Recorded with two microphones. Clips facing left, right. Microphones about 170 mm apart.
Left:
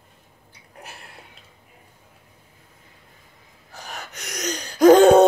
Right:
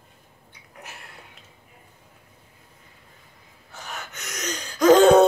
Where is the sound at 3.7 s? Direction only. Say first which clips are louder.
Even; 35° left (ahead or behind).